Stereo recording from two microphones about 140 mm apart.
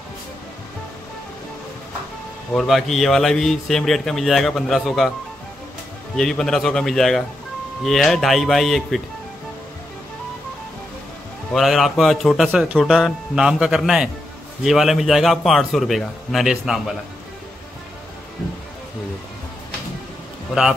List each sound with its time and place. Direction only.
2.5 s speech: centre (ahead or behind)
6.1 s speech: 5° left (ahead or behind)
11.5 s speech: centre (ahead or behind)